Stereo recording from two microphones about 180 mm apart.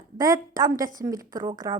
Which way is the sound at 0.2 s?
20° right (ahead or behind).